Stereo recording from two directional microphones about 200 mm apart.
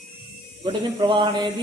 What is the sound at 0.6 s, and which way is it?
Speech, 25° right (ahead or behind).